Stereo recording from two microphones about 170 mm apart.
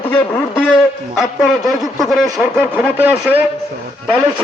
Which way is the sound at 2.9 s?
10° right (ahead or behind).